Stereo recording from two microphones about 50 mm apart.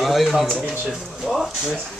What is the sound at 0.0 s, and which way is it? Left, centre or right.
Speech, centre.